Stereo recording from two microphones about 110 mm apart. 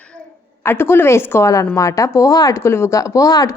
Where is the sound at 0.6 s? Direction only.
20° left (ahead or behind).